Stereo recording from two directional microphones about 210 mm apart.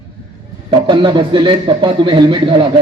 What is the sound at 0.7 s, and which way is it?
A man's voice, 20° right (ahead or behind).